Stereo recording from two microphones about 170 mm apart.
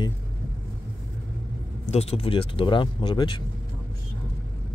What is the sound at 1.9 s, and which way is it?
Speech, 35° left (ahead or behind).